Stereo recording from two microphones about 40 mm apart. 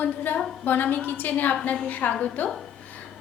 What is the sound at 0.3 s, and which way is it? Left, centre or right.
A woman's voice, left.